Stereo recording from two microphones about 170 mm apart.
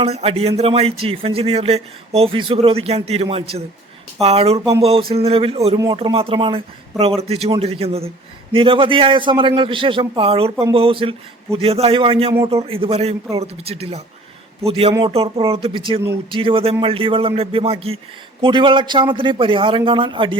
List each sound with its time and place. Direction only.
0.0 s a man's voice: 35° right (ahead or behind)